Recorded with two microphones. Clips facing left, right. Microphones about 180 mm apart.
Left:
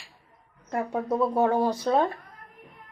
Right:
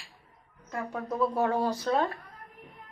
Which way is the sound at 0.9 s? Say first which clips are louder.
Left 3 dB; 25° left (ahead or behind).